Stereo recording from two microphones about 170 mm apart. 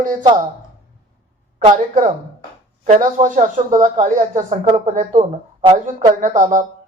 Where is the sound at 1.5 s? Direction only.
45° right (ahead or behind).